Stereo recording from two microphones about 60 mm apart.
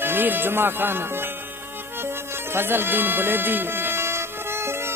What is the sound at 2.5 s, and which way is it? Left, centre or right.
Music, right.